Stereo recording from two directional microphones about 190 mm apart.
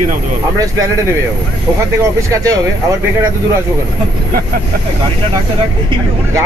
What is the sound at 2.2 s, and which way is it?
Speech, 15° right (ahead or behind).